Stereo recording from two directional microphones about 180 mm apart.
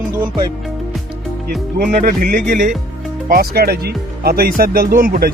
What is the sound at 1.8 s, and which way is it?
Speech, 45° right (ahead or behind).